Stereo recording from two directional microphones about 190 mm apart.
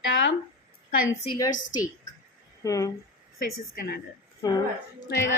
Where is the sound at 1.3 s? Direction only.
20° left (ahead or behind).